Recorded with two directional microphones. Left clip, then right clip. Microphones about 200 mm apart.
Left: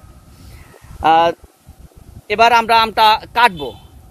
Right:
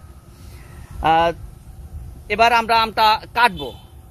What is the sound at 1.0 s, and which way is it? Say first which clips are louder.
Speech: left 4 dB; 35° left (ahead or behind).